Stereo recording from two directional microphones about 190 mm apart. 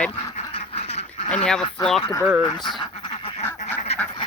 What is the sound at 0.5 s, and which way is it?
Duck, 35° left (ahead or behind).